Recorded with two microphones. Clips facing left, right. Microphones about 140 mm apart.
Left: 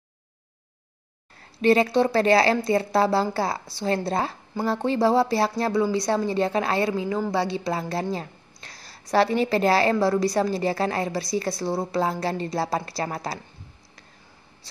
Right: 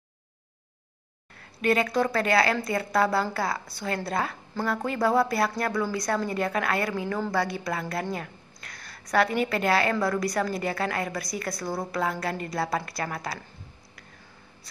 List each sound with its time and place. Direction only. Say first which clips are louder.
1.6 s speech: left 5 dB; 30° left (ahead or behind)